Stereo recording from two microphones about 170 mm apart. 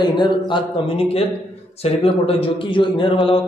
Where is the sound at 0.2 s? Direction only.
30° left (ahead or behind).